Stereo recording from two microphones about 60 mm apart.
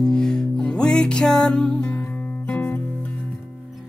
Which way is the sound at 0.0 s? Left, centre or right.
Centre.